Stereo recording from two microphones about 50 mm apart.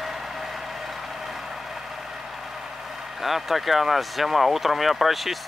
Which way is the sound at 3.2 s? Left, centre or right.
Centre.